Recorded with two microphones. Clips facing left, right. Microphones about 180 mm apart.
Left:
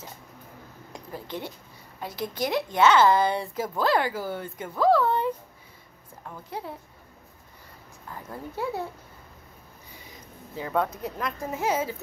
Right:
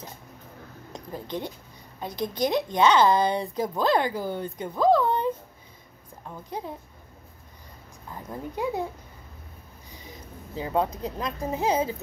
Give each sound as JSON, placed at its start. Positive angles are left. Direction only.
{"t": 0.9, "sound": "a woman's voice", "side_deg": -20}
{"t": 8.1, "sound": "a woman's voice", "side_deg": -15}
{"t": 10.6, "sound": "speech", "side_deg": -20}